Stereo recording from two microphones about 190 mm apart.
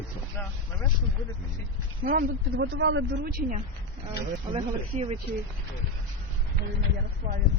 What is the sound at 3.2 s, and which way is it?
Speech, 50° right (ahead or behind).